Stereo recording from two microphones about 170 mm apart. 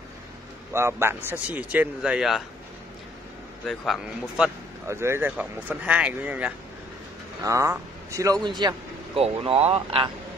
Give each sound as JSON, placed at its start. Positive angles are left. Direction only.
{"t": 0.7, "sound": "a man's voice", "side_deg": -15}
{"t": 3.6, "sound": "speech", "side_deg": 0}
{"t": 4.8, "sound": "a man's voice", "side_deg": -15}
{"t": 8.5, "sound": "vehicle", "side_deg": -25}
{"t": 9.2, "sound": "speech", "side_deg": -35}